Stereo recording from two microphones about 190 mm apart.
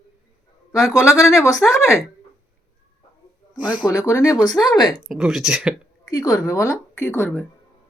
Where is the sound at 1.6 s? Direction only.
5° left (ahead or behind).